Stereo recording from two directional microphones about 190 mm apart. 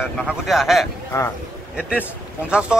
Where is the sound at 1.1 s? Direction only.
15° left (ahead or behind).